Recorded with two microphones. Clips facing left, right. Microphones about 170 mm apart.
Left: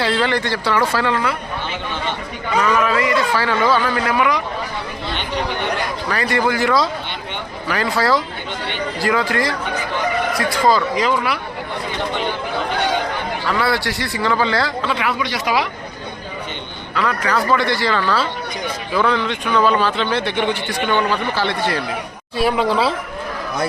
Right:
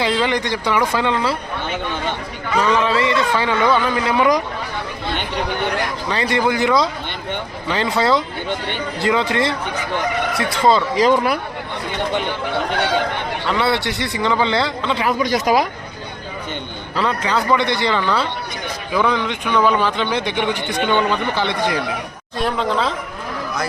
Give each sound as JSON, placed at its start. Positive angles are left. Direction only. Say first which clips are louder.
{"t": 0.0, "sound": "a man's voice", "louder": "even", "side_deg": -15}
{"t": 2.6, "sound": "a man's voice", "louder": "even", "side_deg": -25}
{"t": 6.1, "sound": "a man's voice", "louder": "even", "side_deg": -20}
{"t": 11.0, "sound": "speech", "louder": "right 4 dB", "side_deg": -40}
{"t": 13.5, "sound": "a man's voice", "louder": "right 1 dB", "side_deg": -25}
{"t": 14.9, "sound": "speech", "louder": "right 3 dB", "side_deg": -40}
{"t": 16.9, "sound": "a man's voice", "louder": "even", "side_deg": -30}
{"t": 22.4, "sound": "a woman's voice", "louder": "left 3 dB", "side_deg": 5}